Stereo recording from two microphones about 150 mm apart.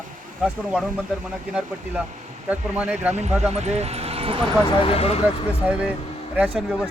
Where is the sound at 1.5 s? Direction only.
10° right (ahead or behind).